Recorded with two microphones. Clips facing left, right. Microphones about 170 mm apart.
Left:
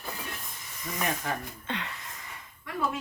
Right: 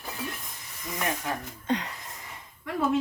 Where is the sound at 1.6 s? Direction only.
40° right (ahead or behind).